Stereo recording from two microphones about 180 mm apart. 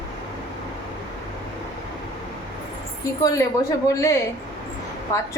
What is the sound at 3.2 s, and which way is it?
A woman's voice, 20° left (ahead or behind).